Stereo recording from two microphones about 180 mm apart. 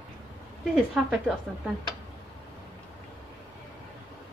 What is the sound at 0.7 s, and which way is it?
Speech, 5° right (ahead or behind).